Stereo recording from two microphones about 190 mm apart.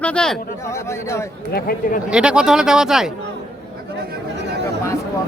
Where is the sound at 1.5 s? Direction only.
50° left (ahead or behind).